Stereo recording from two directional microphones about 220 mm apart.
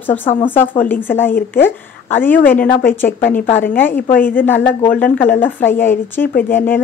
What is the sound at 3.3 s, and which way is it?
Speech, 30° left (ahead or behind).